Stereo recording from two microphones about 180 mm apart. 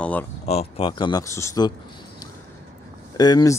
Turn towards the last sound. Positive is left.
turn(degrees=20)  # may be behind; listen again after turning